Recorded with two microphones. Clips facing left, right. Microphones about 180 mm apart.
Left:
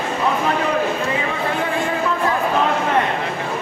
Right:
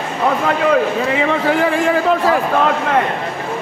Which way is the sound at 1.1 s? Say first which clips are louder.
Right 6 dB; 90° right.